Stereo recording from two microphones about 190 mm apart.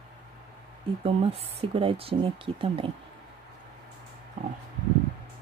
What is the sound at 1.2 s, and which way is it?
Speech, 30° right (ahead or behind).